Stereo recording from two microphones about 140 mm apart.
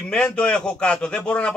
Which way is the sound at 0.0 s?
5° left (ahead or behind).